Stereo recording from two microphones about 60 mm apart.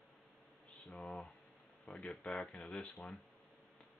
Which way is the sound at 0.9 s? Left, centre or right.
Centre.